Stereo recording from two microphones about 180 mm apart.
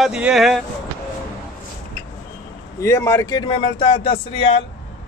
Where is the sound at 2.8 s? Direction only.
15° left (ahead or behind); by 4.6 s 30° left (ahead or behind).